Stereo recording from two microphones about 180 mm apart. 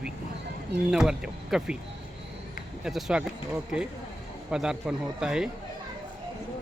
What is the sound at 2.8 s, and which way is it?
Speech, centre (ahead or behind).